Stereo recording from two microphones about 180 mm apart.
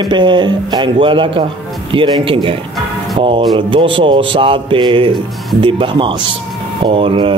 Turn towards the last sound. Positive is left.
turn(degrees=-30)  # may be behind; listen again after turning